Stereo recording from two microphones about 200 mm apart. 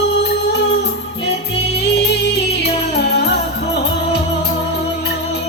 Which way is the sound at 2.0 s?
55° left (ahead or behind).